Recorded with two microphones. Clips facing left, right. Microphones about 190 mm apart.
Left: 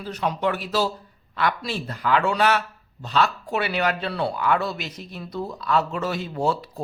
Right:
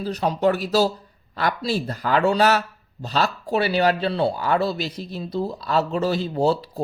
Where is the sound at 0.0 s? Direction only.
35° right (ahead or behind).